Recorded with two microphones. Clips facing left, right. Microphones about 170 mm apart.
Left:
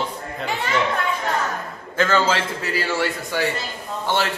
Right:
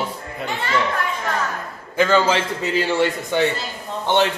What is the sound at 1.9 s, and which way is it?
A man's voice, 15° right (ahead or behind).